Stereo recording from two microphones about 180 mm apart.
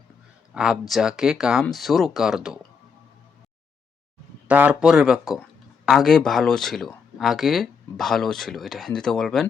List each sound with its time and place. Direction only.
0.5 s speech: 5° right (ahead or behind)
4.4 s speech: 10° right (ahead or behind)